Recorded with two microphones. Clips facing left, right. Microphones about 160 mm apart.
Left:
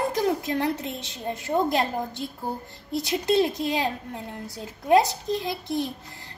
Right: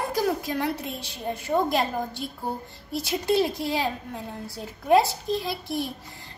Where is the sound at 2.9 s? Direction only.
20° left (ahead or behind).